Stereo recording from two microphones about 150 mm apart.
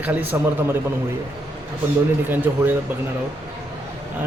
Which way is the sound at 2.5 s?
15° right (ahead or behind).